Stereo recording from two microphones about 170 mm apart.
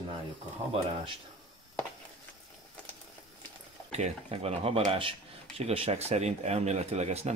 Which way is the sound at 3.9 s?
40° right (ahead or behind).